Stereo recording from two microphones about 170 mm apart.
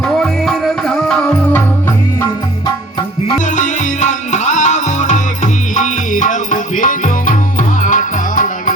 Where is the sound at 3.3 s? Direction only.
50° left (ahead or behind).